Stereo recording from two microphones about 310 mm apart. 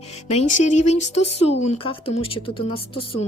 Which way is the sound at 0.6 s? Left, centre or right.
Left.